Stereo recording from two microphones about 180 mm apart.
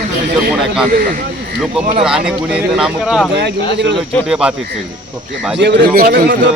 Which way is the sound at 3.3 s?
70° right (ahead or behind).